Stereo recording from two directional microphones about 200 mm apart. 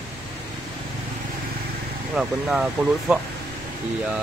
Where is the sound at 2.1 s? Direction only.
Centre (ahead or behind).